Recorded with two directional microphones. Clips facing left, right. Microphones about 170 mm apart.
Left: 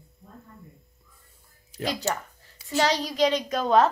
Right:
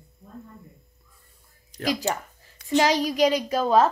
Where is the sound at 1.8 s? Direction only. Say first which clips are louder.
Right 2 dB; 10° right (ahead or behind).